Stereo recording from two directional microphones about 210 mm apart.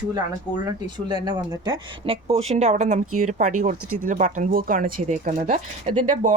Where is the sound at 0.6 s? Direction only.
20° right (ahead or behind).